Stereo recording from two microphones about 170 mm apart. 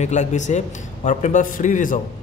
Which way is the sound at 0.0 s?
45° left (ahead or behind).